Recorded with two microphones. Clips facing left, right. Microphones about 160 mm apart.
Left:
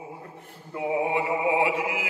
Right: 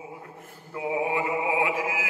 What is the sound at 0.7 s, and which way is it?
Mantra, 20° left (ahead or behind).